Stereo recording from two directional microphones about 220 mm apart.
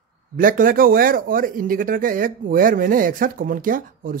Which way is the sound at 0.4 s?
40° right (ahead or behind).